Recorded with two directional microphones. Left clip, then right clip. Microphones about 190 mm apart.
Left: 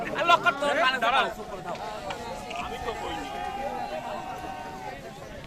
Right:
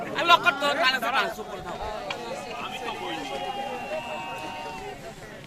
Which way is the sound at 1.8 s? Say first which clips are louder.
Right 2 dB; centre (ahead or behind).